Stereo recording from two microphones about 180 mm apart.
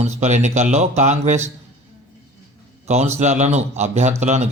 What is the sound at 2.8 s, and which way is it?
A man's voice, 40° right (ahead or behind).